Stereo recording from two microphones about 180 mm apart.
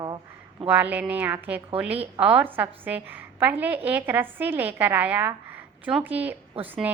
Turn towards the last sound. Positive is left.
turn(degrees=-30)  # may be behind; listen again after turning